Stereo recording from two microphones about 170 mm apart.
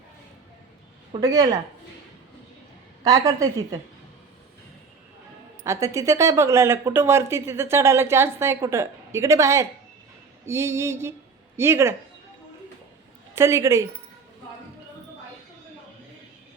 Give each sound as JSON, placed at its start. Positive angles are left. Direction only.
{"t": 1.2, "sound": "a woman's voice", "side_deg": -20}
{"t": 3.0, "sound": "a woman's voice", "side_deg": -20}
{"t": 5.6, "sound": "speech", "side_deg": -15}
{"t": 13.3, "sound": "speech", "side_deg": -15}